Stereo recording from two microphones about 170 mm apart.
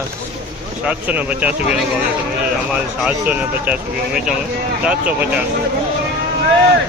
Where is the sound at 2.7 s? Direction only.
5° right (ahead or behind).